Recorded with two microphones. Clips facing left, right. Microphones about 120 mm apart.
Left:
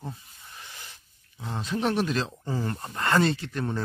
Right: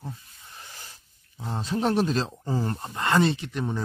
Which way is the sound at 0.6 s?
35° right (ahead or behind).